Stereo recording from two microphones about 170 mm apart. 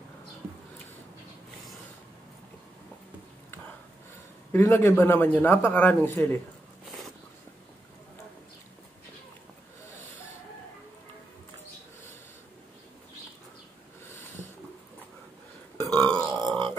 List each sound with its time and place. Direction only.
4.5 s a man's voice: 15° left (ahead or behind)
15.9 s burping: 5° left (ahead or behind)
16.3 s grunt: 25° right (ahead or behind)